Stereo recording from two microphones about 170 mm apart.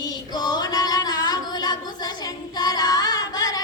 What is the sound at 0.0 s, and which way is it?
Singing, 25° left (ahead or behind).